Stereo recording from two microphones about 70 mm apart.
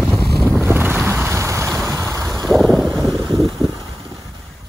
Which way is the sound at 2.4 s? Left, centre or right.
Centre.